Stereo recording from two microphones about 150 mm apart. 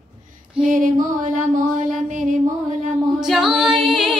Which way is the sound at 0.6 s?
60° right (ahead or behind).